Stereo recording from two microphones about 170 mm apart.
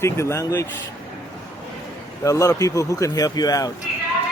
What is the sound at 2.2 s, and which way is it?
Speech, 20° left (ahead or behind).